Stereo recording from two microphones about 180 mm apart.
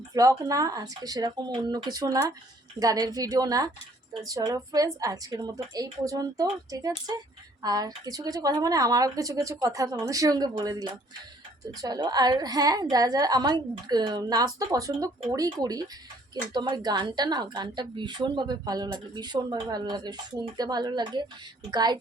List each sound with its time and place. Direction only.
0.1 s speech: 20° right (ahead or behind)